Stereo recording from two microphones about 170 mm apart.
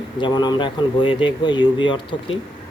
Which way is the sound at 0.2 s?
25° left (ahead or behind).